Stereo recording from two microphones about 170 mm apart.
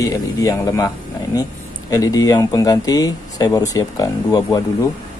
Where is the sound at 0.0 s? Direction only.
20° left (ahead or behind).